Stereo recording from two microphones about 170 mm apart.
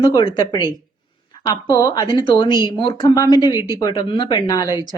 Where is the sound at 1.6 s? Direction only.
20° left (ahead or behind).